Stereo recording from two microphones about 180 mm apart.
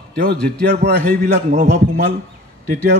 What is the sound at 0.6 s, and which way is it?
Speech, 60° right (ahead or behind).